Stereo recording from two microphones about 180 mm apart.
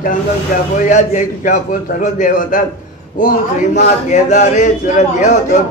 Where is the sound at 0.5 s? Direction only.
50° left (ahead or behind).